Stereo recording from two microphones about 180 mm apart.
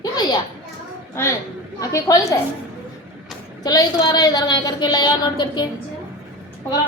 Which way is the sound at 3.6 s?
20° left (ahead or behind).